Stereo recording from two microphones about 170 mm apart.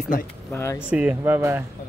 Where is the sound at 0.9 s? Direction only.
10° right (ahead or behind).